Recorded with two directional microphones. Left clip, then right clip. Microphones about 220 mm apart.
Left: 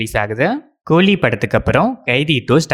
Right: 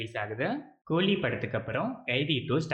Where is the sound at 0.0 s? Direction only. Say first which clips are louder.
Left 16 dB; 50° left (ahead or behind).